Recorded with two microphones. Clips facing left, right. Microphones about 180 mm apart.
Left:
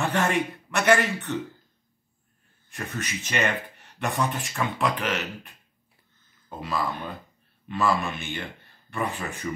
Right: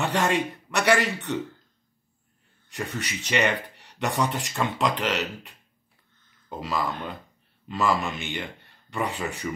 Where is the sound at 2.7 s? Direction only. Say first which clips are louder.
Right 1 dB; 65° right (ahead or behind).